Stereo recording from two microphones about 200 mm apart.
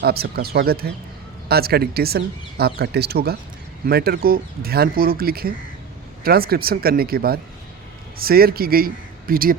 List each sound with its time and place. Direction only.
0.0 s speech: 50° right (ahead or behind)